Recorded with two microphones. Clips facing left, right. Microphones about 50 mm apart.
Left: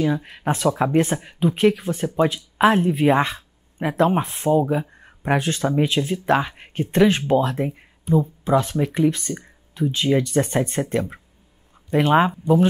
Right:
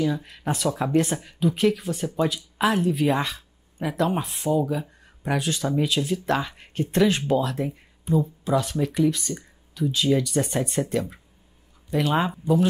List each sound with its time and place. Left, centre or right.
0.0 s speech: left